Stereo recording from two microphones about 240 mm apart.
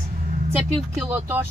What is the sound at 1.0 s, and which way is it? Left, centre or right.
Speech, centre.